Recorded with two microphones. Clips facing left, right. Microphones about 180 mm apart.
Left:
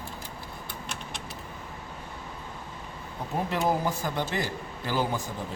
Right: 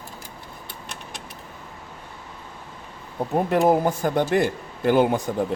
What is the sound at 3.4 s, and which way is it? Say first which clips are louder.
A man's voice: right 8 dB; 55° right (ahead or behind).